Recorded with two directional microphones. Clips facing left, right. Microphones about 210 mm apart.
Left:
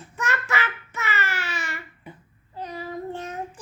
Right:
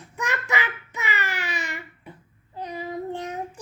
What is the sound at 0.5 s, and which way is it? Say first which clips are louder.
Child singing: even; 15° right (ahead or behind).